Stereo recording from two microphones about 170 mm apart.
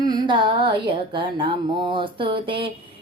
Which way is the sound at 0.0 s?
25° right (ahead or behind).